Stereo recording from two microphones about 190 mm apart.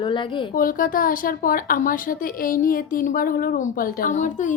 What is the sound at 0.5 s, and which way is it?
A woman's voice, 45° left (ahead or behind).